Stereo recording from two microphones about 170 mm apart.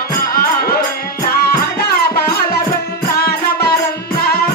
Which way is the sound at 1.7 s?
65° left (ahead or behind).